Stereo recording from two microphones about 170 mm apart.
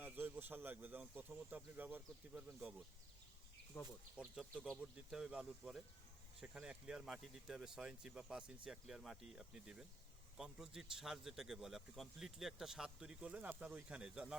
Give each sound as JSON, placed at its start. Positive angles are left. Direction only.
{"t": 0.0, "sound": "speech", "side_deg": -10}
{"t": 3.7, "sound": "speech", "side_deg": 20}
{"t": 4.2, "sound": "speech", "side_deg": -5}